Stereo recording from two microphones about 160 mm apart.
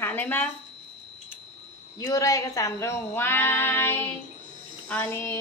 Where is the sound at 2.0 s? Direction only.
20° left (ahead or behind).